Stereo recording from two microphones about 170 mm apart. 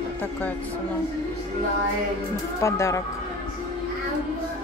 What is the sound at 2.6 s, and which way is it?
Speech, 15° left (ahead or behind).